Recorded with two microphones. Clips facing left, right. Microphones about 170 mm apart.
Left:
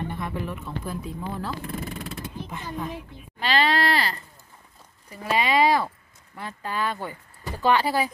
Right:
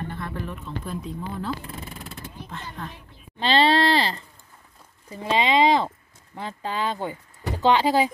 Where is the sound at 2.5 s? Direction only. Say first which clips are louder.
Left 4 dB; 10° left (ahead or behind).